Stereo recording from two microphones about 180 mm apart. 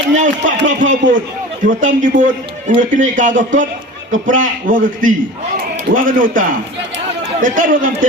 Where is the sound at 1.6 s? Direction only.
45° right (ahead or behind).